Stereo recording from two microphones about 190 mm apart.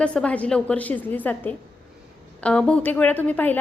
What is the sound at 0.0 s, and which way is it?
A woman's voice, 5° left (ahead or behind).